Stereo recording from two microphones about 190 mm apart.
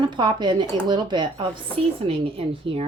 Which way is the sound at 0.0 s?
25° right (ahead or behind).